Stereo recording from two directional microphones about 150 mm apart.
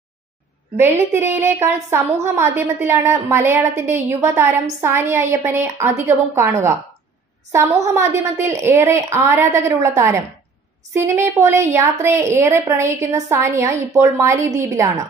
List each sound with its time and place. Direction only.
0.7 s a woman's voice: 15° right (ahead or behind)